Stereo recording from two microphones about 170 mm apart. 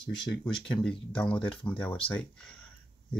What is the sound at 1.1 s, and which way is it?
Speech, 5° left (ahead or behind).